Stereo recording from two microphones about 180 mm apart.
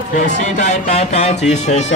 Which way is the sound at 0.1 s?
40° left (ahead or behind).